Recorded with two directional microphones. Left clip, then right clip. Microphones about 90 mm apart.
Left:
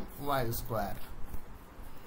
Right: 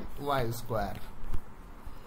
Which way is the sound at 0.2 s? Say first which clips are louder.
Right 2 dB; 35° right (ahead or behind).